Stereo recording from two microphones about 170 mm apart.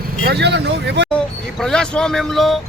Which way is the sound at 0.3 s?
80° right.